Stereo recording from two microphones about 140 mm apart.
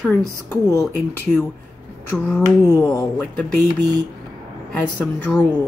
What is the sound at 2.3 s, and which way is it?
Speech, 20° left (ahead or behind).